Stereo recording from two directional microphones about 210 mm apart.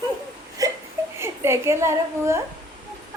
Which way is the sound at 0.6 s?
15° right (ahead or behind).